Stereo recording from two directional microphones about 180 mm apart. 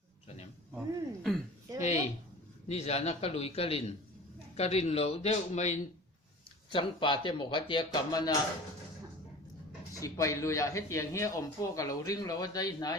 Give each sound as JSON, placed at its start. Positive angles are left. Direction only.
{"t": 0.7, "sound": "speech", "side_deg": 0}
{"t": 2.6, "sound": "a man's voice", "side_deg": 35}
{"t": 6.7, "sound": "speech", "side_deg": 25}
{"t": 10.0, "sound": "speech", "side_deg": 15}